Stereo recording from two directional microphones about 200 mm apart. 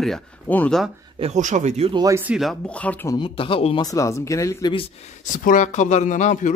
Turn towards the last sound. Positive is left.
turn(degrees=40)  # may be behind; listen again after turning